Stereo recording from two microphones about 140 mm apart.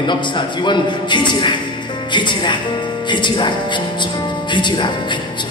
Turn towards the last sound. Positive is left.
turn(degrees=35)  # may be behind; listen again after turning